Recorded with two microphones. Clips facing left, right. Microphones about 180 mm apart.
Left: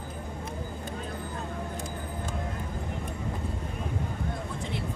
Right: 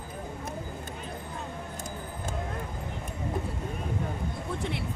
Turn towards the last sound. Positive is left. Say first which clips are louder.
# right 2 dB
turn(degrees=-65)  # may be behind; listen again after turning